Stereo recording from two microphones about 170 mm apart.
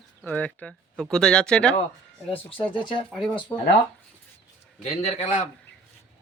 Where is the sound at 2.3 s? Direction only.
30° left (ahead or behind).